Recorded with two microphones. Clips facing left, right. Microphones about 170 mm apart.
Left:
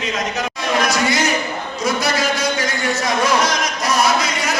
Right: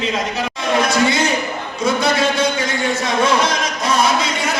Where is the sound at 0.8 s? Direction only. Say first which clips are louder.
Right 2 dB; 30° right (ahead or behind).